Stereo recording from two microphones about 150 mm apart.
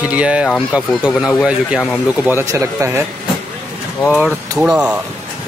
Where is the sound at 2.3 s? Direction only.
15° right (ahead or behind).